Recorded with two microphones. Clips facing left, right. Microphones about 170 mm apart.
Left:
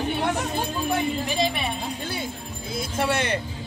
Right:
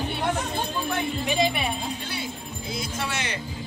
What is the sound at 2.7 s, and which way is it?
Speech, 55° left (ahead or behind).